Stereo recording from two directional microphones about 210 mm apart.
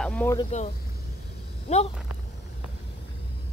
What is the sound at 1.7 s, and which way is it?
Speech, 30° left (ahead or behind).